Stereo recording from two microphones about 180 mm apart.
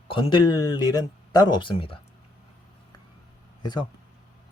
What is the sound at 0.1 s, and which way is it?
Speech, 25° left (ahead or behind).